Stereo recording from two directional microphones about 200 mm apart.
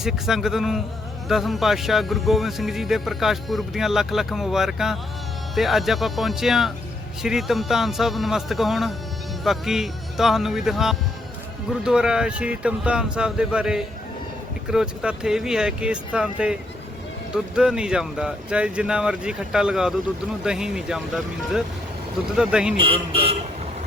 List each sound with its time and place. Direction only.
0.0 s speech: centre (ahead or behind)
22.8 s speech: 25° right (ahead or behind)